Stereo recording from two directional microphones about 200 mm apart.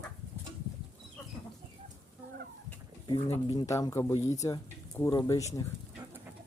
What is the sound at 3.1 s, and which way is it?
Speech, 30° left (ahead or behind).